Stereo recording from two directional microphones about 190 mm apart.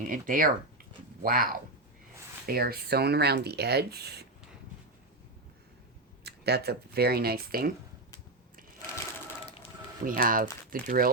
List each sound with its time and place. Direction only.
0.0 s speech: 45° right (ahead or behind)
2.5 s speech: 55° right (ahead or behind)
6.2 s speech: 60° right (ahead or behind)
10.0 s speech: 45° right (ahead or behind)